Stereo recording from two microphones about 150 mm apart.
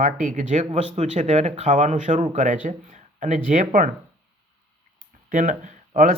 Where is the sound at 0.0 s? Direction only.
60° right (ahead or behind).